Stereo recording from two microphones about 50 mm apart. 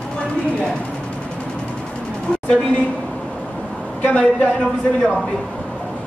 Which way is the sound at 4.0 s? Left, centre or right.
Left.